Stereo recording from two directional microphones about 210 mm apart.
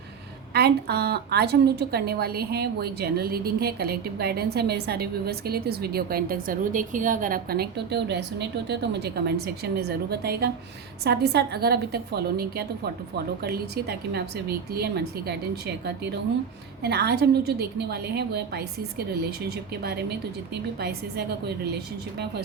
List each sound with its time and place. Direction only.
0.5 s a woman's voice: 50° right (ahead or behind)